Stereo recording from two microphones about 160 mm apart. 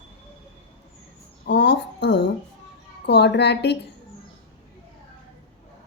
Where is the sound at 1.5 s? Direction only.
90° left.